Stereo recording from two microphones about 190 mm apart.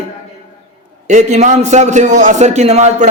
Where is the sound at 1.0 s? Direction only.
40° right (ahead or behind).